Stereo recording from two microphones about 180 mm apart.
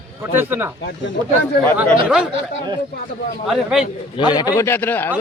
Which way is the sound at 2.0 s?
5° right (ahead or behind).